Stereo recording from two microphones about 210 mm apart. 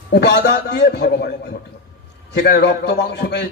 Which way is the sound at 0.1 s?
50° left (ahead or behind).